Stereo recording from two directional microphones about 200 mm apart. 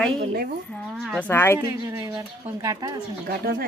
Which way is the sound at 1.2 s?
10° left (ahead or behind).